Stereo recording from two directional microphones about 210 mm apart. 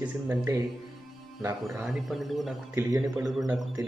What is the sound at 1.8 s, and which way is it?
Speech, centre (ahead or behind).